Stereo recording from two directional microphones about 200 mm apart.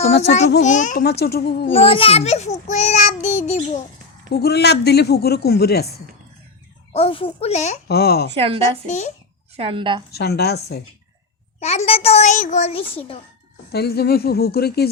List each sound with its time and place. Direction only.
0.2 s a child's voice: 35° left (ahead or behind)
1.0 s speech: 55° left (ahead or behind)
1.7 s a child's voice: 30° left (ahead or behind)
4.3 s speech: 55° left (ahead or behind)
6.9 s speech: 30° left (ahead or behind)
7.9 s speech: 50° left (ahead or behind)
8.4 s a woman's voice: 30° right (ahead or behind)
8.9 s a child's voice: 35° left (ahead or behind)
9.6 s a woman's voice: 25° right (ahead or behind)
10.1 s speech: 55° left (ahead or behind)
11.6 s a child's voice: 35° left (ahead or behind)
13.7 s speech: 55° left (ahead or behind)